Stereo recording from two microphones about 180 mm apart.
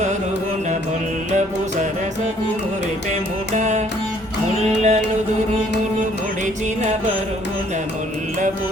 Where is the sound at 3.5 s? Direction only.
40° right (ahead or behind).